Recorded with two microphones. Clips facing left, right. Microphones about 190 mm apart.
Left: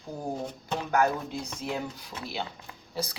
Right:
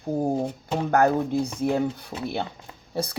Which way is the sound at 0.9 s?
55° right (ahead or behind).